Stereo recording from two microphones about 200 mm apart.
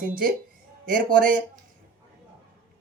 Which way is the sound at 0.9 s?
45° right (ahead or behind).